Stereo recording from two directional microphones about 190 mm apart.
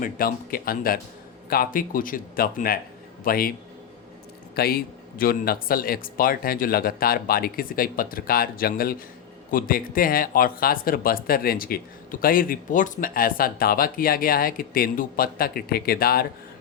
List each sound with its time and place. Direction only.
0.0 s speech: 50° left (ahead or behind)
4.5 s speech: 50° left (ahead or behind)